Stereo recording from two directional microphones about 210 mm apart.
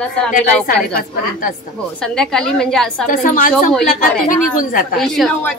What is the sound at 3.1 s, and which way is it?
A woman's voice, 40° left (ahead or behind).